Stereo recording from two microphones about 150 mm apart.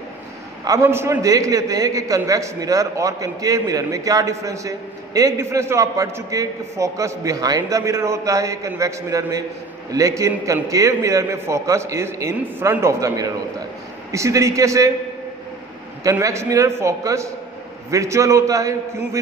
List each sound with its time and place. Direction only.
0.7 s a man's voice: 20° right (ahead or behind)
16.0 s a man's voice: 20° right (ahead or behind)